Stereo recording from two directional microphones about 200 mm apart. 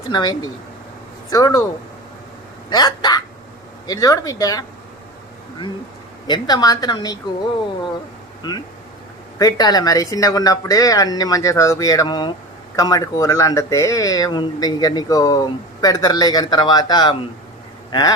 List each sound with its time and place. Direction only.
0.1 s speech: 20° left (ahead or behind)
2.6 s speech: 20° left (ahead or behind)
6.2 s speech: 20° left (ahead or behind)
8.4 s speech: 20° left (ahead or behind)